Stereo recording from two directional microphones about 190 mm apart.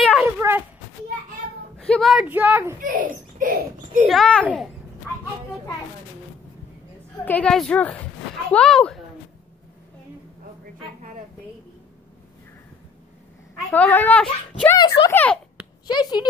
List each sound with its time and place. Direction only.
0.2 s a sound: 15° right (ahead or behind)
1.8 s speech: 5° left (ahead or behind)
2.8 s a child's voice: 45° right (ahead or behind)
4.1 s speech: 5° left (ahead or behind)
7.2 s speech: 5° left (ahead or behind)
13.7 s speech: 10° left (ahead or behind)
14.8 s speech: 20° left (ahead or behind)
15.9 s speech: 20° left (ahead or behind)